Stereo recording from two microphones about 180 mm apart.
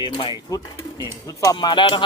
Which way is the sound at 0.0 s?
30° left (ahead or behind).